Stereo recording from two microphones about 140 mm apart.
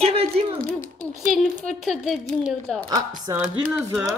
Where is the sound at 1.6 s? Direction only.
Centre (ahead or behind).